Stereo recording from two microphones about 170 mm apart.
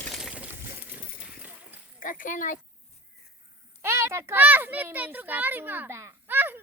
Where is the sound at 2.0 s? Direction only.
50° left (ahead or behind).